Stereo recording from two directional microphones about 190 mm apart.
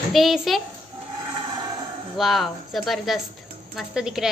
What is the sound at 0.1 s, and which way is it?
Speech, centre (ahead or behind).